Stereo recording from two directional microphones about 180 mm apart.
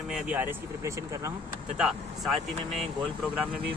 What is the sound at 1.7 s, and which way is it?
Speech, centre (ahead or behind).